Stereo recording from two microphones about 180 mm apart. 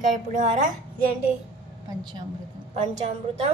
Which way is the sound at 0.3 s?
45° right (ahead or behind).